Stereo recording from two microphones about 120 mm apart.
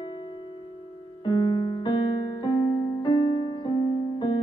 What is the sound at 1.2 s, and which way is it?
Music, 35° left (ahead or behind).